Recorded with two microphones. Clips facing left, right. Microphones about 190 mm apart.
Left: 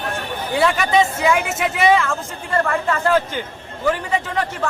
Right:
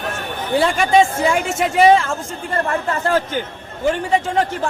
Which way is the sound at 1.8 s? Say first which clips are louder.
Right 4 dB; 35° right (ahead or behind).